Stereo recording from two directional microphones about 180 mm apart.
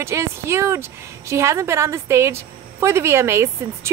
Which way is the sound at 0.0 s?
15° right (ahead or behind).